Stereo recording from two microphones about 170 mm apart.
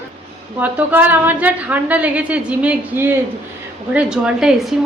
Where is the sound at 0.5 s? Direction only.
10° right (ahead or behind).